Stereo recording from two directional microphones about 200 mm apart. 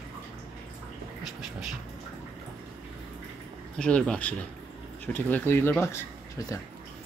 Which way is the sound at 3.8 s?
5° left (ahead or behind).